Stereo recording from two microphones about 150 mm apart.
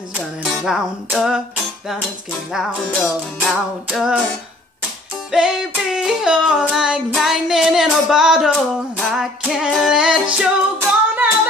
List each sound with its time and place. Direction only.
0.1 s music: 5° right (ahead or behind)
2.5 s music: 5° right (ahead or behind)
5.3 s music: 5° right (ahead or behind)